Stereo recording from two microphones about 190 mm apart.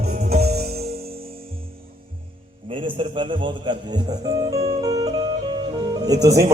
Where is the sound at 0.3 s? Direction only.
55° right (ahead or behind).